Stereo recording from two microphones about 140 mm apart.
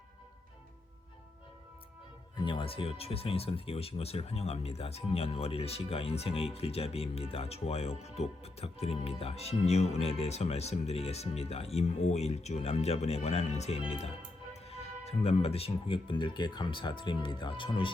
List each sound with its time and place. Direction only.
2.4 s speech: 35° left (ahead or behind)